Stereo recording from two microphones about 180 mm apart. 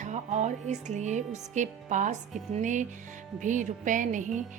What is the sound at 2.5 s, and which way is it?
Music, 45° right (ahead or behind).